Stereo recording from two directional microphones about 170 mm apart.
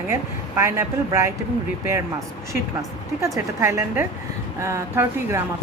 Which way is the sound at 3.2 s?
15° right (ahead or behind).